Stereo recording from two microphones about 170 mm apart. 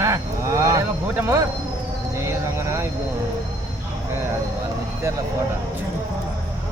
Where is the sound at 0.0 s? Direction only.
20° right (ahead or behind).